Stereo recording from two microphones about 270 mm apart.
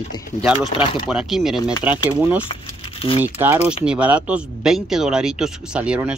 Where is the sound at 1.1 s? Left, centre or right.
Centre.